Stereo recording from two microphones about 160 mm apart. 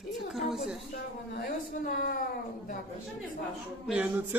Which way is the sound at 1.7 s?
55° left (ahead or behind).